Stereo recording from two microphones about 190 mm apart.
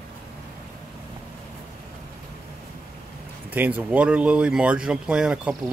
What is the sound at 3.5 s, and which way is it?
Speech, 10° right (ahead or behind).